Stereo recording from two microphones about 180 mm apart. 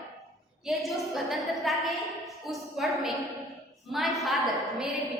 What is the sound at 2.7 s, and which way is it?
A woman's voice, centre (ahead or behind).